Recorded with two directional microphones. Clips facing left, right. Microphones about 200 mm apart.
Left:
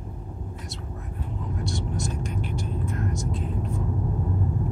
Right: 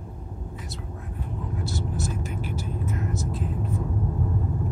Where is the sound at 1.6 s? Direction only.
5° right (ahead or behind).